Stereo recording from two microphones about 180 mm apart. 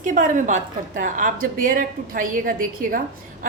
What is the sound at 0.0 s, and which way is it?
A woman's voice, 45° right (ahead or behind).